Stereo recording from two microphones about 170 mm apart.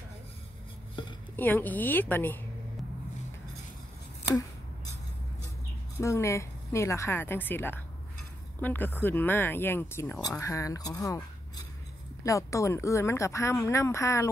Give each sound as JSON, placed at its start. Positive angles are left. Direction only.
{"t": 1.3, "sound": "speech", "side_deg": 10}
{"t": 5.9, "sound": "speech", "side_deg": 15}